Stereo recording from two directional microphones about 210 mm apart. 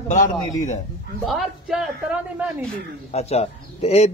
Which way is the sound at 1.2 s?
Centre (ahead or behind).